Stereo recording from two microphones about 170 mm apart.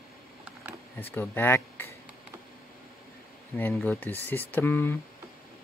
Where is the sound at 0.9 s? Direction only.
10° left (ahead or behind).